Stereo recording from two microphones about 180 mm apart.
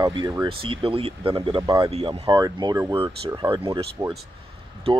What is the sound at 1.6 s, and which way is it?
Speech, 20° right (ahead or behind).